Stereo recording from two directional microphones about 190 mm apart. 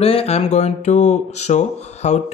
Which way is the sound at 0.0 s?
30° left (ahead or behind).